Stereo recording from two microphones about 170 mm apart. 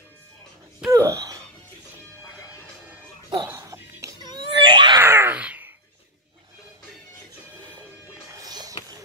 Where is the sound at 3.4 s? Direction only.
15° right (ahead or behind).